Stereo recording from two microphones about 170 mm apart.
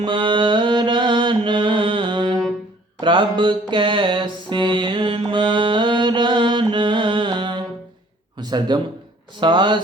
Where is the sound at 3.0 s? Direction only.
30° right (ahead or behind).